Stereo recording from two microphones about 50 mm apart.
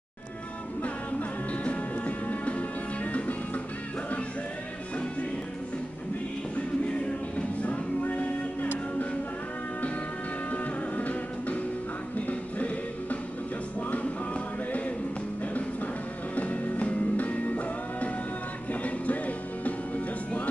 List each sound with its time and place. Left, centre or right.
1.5 s music: left
6.5 s music: left
10.5 s music: left
16.3 s music: left